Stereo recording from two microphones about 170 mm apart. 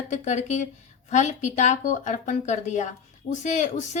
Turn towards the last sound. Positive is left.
turn(degrees=45)  # may be behind; listen again after turning